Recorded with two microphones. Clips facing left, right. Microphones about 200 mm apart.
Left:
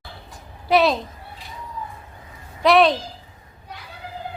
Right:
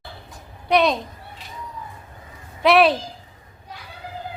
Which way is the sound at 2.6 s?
5° right (ahead or behind).